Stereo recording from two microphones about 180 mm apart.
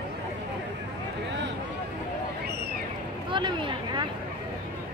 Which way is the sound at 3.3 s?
25° right (ahead or behind).